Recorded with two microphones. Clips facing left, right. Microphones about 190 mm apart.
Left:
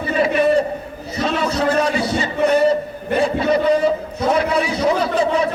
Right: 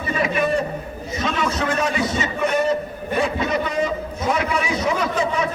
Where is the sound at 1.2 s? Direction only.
35° left (ahead or behind).